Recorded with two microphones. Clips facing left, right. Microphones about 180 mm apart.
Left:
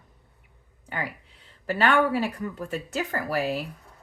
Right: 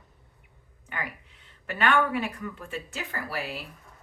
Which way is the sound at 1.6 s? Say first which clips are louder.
Left 3 dB; 35° left (ahead or behind).